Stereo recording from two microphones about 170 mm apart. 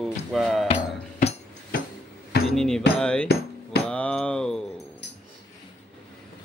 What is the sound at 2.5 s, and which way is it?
Music, 5° left (ahead or behind).